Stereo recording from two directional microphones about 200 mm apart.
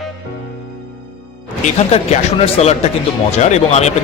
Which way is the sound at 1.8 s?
30° left (ahead or behind).